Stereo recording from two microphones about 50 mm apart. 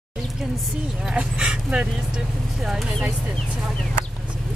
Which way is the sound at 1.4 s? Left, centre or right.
Centre.